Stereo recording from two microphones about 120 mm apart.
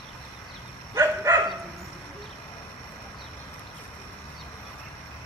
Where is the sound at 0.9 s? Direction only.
25° right (ahead or behind).